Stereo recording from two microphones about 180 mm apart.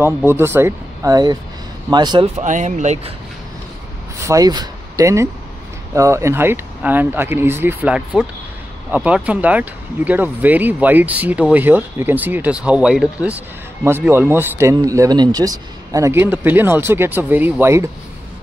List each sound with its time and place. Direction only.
0.0 s speech: 10° right (ahead or behind)
2.4 s speech: 40° right (ahead or behind)
4.2 s speech: 20° right (ahead or behind)